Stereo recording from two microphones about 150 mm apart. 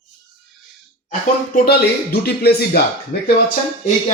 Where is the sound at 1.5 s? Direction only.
90° left.